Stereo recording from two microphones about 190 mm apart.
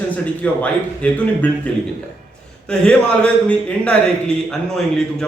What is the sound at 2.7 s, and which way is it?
A man's voice, 5° left (ahead or behind).